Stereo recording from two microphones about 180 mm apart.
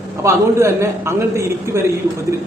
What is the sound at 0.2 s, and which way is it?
A man's voice, 15° right (ahead or behind).